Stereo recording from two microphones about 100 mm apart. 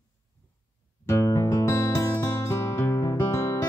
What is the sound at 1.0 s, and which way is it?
Music, 30° left (ahead or behind).